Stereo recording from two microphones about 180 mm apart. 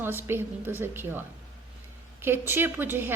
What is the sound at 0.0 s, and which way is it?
A woman's voice, 10° right (ahead or behind).